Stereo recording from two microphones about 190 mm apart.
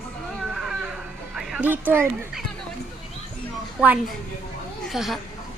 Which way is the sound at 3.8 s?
5° right (ahead or behind).